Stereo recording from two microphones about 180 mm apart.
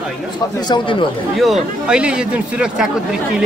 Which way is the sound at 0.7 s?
30° left (ahead or behind).